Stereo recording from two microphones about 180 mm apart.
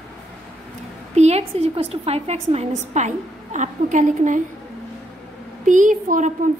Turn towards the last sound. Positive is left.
turn(degrees=-45)  # may be behind; listen again after turning